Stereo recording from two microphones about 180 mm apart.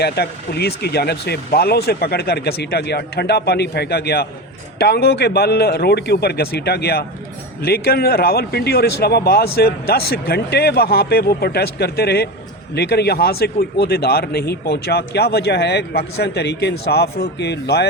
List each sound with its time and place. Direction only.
0.0 s speech: 65° left (ahead or behind)